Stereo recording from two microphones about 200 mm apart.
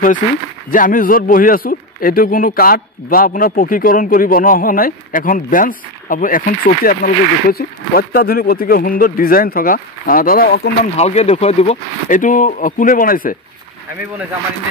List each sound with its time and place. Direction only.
0.7 s a man's voice: 45° left (ahead or behind)
11.0 s speech: 35° left (ahead or behind)